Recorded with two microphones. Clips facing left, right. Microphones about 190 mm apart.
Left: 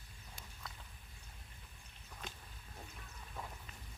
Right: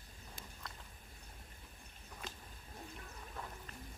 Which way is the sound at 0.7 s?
Centre (ahead or behind).